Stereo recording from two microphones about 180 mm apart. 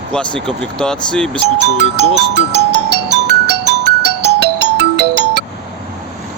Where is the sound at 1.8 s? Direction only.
70° right (ahead or behind).